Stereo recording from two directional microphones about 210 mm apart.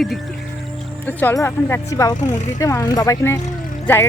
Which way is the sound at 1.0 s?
10° left (ahead or behind).